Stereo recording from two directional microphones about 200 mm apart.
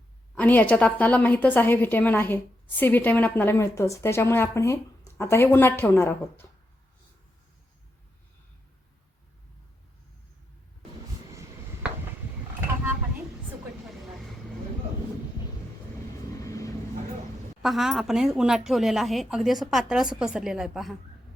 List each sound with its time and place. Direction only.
0.3 s a woman's voice: 10° left (ahead or behind)
16.4 s vehicle: 15° left (ahead or behind)
17.6 s speech: centre (ahead or behind)